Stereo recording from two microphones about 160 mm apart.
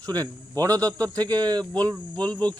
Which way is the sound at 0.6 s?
20° right (ahead or behind).